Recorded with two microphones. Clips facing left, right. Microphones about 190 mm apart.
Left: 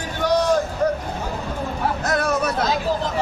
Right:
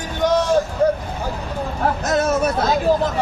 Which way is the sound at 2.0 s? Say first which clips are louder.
Right 3 dB; 25° right (ahead or behind).